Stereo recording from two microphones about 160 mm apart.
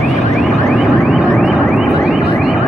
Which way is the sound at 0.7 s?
Centre (ahead or behind).